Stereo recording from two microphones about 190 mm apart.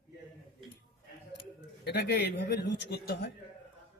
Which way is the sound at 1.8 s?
60° left (ahead or behind).